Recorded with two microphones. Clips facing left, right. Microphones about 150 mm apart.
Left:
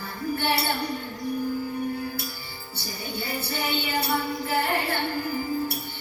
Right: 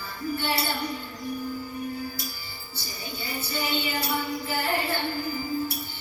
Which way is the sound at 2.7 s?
60° left (ahead or behind).